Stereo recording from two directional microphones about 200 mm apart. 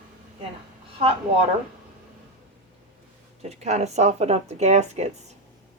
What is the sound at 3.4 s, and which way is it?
A woman's voice, 35° right (ahead or behind).